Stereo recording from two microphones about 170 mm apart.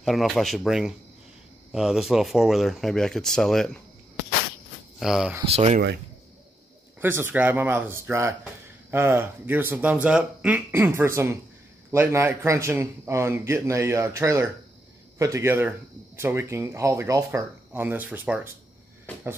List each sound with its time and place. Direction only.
0.0 s speech: centre (ahead or behind)
4.9 s speech: 5° right (ahead or behind)
5.4 s speech: 35° right (ahead or behind)
7.0 s a man's voice: 15° right (ahead or behind)